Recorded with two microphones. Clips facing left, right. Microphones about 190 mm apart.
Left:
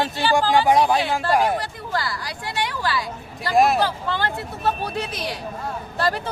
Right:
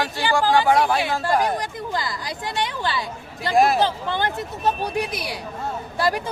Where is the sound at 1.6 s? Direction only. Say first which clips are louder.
Even; 20° right (ahead or behind).